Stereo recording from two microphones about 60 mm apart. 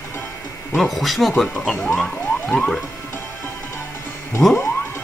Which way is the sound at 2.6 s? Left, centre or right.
Centre.